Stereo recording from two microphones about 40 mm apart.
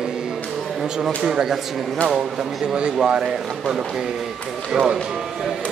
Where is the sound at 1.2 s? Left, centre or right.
Centre.